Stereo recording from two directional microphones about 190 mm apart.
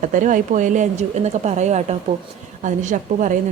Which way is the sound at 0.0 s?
40° right (ahead or behind).